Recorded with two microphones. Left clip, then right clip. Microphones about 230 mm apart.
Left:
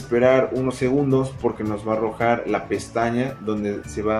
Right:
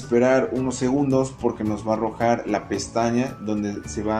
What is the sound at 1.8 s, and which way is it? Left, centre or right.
Speech, centre.